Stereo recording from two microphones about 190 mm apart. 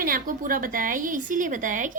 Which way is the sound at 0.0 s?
50° right (ahead or behind).